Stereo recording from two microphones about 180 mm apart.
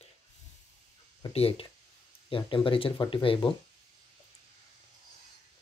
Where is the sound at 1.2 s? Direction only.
30° left (ahead or behind).